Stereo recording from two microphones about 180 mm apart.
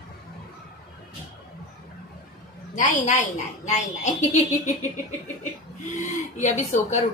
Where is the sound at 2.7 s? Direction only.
45° left (ahead or behind).